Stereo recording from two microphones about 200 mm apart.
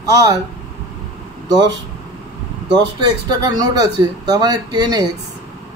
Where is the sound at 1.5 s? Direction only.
20° right (ahead or behind).